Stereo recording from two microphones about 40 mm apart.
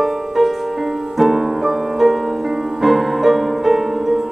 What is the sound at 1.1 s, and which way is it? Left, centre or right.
Music, centre.